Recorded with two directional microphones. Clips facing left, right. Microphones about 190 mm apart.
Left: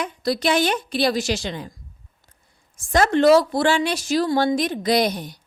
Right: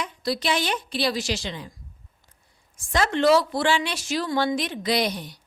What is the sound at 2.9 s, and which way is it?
Speech, 45° left (ahead or behind).